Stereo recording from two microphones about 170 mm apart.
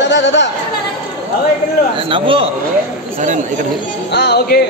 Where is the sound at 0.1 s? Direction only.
90° left.